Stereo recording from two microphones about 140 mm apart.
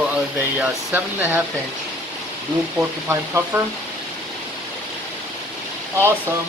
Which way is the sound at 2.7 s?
15° right (ahead or behind).